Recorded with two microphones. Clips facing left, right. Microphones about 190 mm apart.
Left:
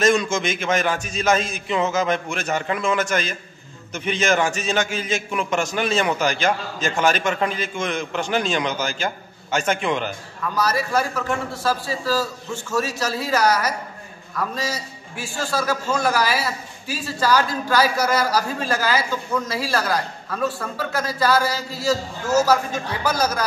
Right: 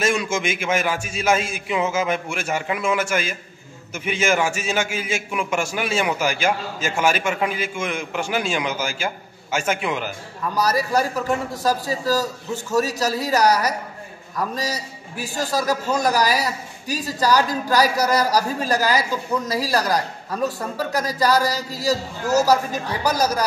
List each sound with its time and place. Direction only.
0.0 s a man's voice: 10° right (ahead or behind)
10.5 s a man's voice: 40° right (ahead or behind)